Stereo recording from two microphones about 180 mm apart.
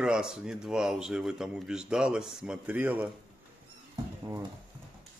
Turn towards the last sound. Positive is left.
turn(degrees=-20)  # may be behind; listen again after turning